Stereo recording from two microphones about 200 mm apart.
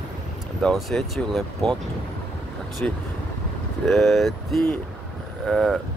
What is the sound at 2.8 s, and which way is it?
Speech, 5° left (ahead or behind).